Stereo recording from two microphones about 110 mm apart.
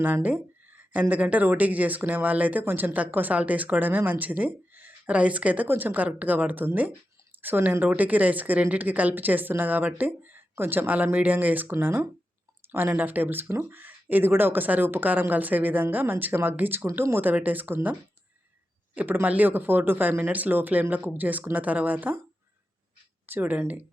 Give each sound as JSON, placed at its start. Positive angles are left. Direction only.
{"t": 0.0, "sound": "speech", "side_deg": -15}
{"t": 18.9, "sound": "speech", "side_deg": -15}
{"t": 23.2, "sound": "speech", "side_deg": -15}